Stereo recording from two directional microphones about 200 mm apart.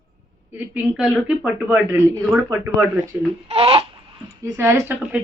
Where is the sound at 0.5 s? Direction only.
5° right (ahead or behind).